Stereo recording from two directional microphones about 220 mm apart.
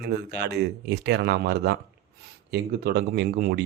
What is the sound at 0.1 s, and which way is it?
Speech, 50° right (ahead or behind).